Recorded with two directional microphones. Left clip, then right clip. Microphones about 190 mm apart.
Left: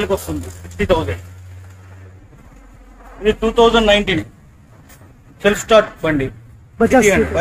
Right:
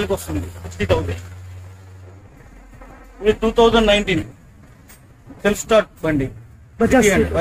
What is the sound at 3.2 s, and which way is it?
Speech, 5° left (ahead or behind).